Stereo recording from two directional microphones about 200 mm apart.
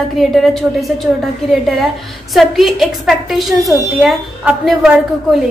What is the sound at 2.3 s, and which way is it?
A woman's voice, centre (ahead or behind).